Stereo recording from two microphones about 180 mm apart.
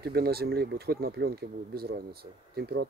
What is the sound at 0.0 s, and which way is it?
Speech, 60° right (ahead or behind).